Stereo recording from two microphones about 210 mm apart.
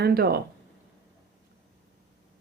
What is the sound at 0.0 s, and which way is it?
Speech, 50° right (ahead or behind).